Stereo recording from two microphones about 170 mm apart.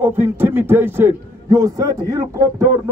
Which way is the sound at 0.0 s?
10° right (ahead or behind).